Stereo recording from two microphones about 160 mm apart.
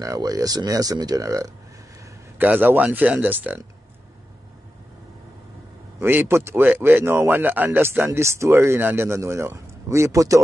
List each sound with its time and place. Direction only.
0.0 s a man's voice: 20° right (ahead or behind)
5.9 s speech: 15° right (ahead or behind)